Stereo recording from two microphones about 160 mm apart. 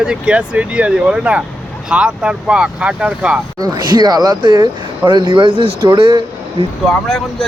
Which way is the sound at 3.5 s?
25° right (ahead or behind).